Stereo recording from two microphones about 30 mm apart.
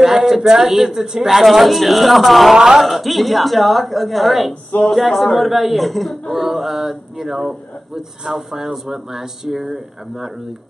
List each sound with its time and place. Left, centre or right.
0.0 s a sound: centre
0.6 s speech: centre
2.5 s speech: centre
2.8 s speech: centre